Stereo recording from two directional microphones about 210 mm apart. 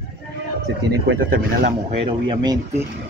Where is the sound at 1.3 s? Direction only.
45° right (ahead or behind).